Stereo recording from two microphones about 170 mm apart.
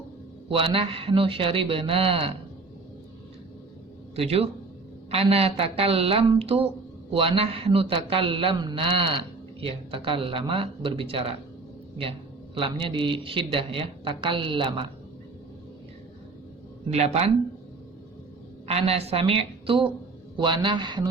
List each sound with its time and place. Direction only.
0.4 s a man's voice: 30° right (ahead or behind)
4.1 s a man's voice: 35° right (ahead or behind)
12.5 s a man's voice: 30° right (ahead or behind)
16.9 s a man's voice: 40° right (ahead or behind)
18.7 s a man's voice: 35° right (ahead or behind)